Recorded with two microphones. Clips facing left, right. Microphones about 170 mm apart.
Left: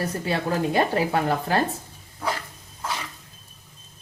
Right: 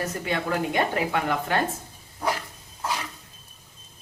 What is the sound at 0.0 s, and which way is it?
Speech, 35° left (ahead or behind).